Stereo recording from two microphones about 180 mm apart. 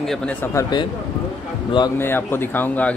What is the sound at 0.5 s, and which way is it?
Speech, 25° left (ahead or behind).